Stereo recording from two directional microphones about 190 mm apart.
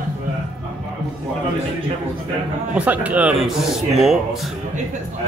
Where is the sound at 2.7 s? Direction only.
10° right (ahead or behind).